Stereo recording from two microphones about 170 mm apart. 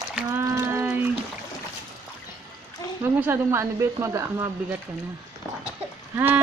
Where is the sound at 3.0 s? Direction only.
15° right (ahead or behind).